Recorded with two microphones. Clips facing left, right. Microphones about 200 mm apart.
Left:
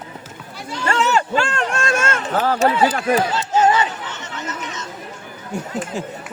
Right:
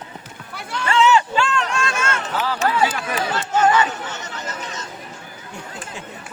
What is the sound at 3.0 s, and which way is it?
Speech, 50° left (ahead or behind).